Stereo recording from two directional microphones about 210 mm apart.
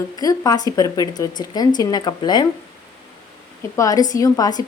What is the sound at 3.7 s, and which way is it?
Speech, 15° left (ahead or behind).